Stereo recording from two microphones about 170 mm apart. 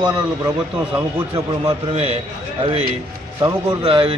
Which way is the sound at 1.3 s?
30° right (ahead or behind).